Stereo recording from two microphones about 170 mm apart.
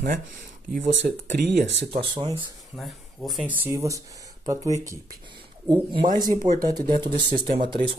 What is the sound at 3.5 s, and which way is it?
Speech, 15° right (ahead or behind).